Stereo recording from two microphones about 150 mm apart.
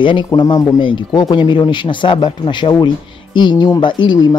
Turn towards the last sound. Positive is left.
turn(degrees=30)  # may be behind; listen again after turning